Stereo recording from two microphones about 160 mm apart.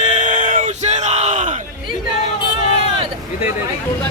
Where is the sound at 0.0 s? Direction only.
50° right (ahead or behind).